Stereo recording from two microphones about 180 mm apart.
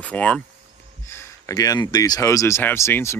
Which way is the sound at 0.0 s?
10° left (ahead or behind).